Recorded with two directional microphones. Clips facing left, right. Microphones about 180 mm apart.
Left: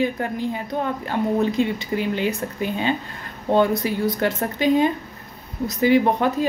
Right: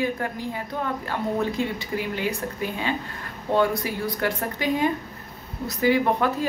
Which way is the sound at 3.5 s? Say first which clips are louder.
Left 4 dB; 25° left (ahead or behind).